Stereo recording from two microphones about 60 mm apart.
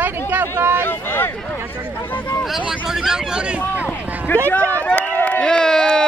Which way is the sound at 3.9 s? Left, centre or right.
Left.